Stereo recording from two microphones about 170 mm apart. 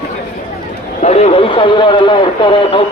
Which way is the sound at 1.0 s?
40° left (ahead or behind).